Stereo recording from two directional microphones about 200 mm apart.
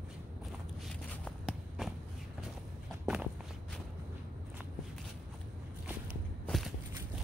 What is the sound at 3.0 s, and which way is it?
Walk, 5° right (ahead or behind).